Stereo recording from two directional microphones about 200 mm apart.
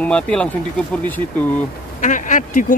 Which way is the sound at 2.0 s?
40° left (ahead or behind).